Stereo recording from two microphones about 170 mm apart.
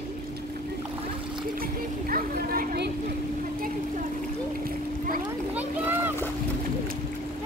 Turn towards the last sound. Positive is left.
turn(degrees=-10)  # may be behind; listen again after turning